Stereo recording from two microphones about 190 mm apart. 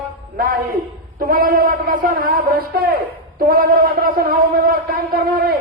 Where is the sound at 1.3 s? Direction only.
50° right (ahead or behind).